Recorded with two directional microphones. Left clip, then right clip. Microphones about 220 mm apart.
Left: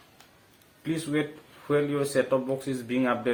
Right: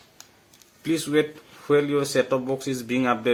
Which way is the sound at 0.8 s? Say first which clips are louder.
Right 6 dB; 55° right (ahead or behind).